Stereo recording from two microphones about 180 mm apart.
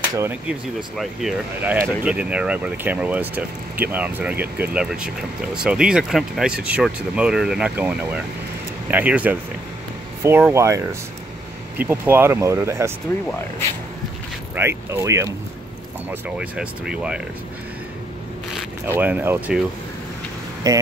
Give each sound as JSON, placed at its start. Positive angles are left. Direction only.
{"t": 0.1, "sound": "speech", "side_deg": -10}
{"t": 14.5, "sound": "speech", "side_deg": -15}
{"t": 16.1, "sound": "speech", "side_deg": -5}
{"t": 18.9, "sound": "speech", "side_deg": -10}
{"t": 20.7, "sound": "speech", "side_deg": -20}